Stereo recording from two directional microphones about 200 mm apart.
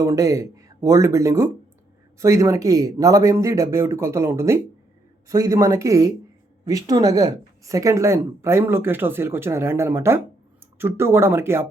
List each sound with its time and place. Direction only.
0.0 s speech: 15° right (ahead or behind)